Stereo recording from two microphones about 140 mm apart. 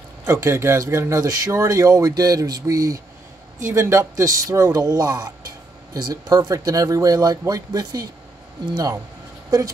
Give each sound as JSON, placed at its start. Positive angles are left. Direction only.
{"t": 0.2, "sound": "speech", "side_deg": -20}